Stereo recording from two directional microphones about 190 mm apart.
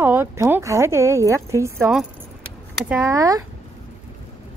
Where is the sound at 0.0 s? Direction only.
10° right (ahead or behind).